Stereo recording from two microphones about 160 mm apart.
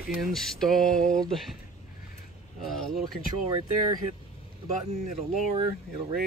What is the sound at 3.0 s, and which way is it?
Speech, 30° right (ahead or behind).